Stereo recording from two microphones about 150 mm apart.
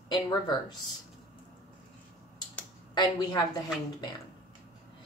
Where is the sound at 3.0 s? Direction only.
30° left (ahead or behind).